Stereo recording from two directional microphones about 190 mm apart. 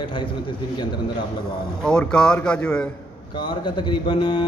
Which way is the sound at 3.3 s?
25° left (ahead or behind).